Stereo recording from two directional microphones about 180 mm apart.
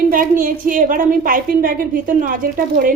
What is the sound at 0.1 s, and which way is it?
A woman's voice, 50° right (ahead or behind).